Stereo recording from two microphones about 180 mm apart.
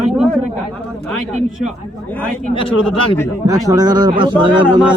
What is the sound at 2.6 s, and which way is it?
Speech, 30° left (ahead or behind).